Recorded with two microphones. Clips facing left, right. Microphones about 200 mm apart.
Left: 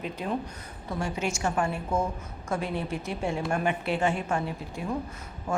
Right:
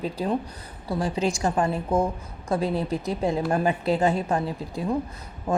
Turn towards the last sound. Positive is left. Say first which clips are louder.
# right 5 dB
turn(degrees=-35)  # may be behind; listen again after turning